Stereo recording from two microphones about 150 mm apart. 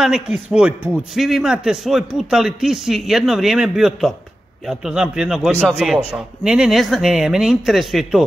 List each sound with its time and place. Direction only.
0.0 s a man's voice: 5° right (ahead or behind)